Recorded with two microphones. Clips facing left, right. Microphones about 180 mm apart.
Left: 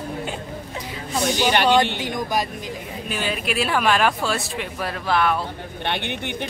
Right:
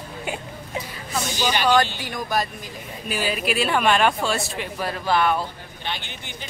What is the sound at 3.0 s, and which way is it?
A man's voice, 5° right (ahead or behind).